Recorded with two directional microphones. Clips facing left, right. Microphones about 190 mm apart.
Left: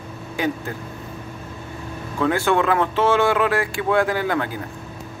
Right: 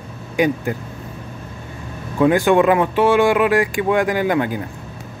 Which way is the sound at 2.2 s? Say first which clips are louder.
Right 6 dB; 15° right (ahead or behind).